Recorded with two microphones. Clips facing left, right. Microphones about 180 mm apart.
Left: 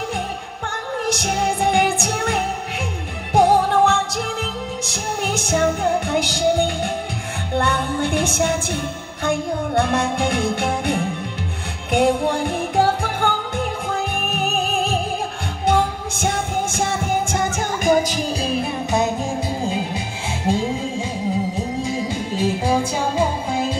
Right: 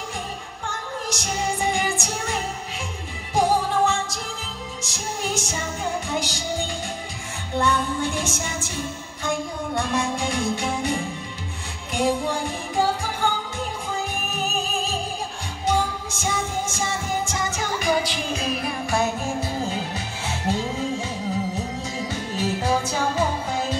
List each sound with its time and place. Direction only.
1.0 s music: 60° left (ahead or behind); by 20.6 s 15° left (ahead or behind)
22.0 s music: 15° left (ahead or behind)